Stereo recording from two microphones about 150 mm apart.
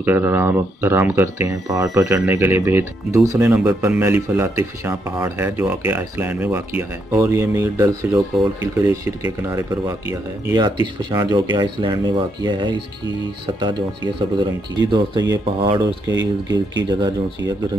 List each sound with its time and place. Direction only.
0.0 s speech: 15° right (ahead or behind)
3.4 s speech: 10° right (ahead or behind); by 15.4 s 25° right (ahead or behind)
15.4 s speech: 40° right (ahead or behind)
15.8 s speech: 25° right (ahead or behind)